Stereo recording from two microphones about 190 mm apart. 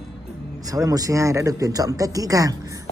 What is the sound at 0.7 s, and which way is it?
A woman's voice, 20° right (ahead or behind).